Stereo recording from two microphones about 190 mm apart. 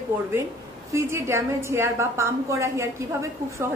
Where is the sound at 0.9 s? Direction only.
15° right (ahead or behind).